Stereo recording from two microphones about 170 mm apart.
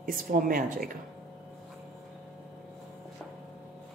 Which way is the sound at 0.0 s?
55° right (ahead or behind).